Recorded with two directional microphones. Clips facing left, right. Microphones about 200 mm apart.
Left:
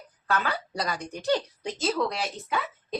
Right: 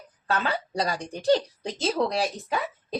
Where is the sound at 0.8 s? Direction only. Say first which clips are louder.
Right 3 dB; 30° right (ahead or behind).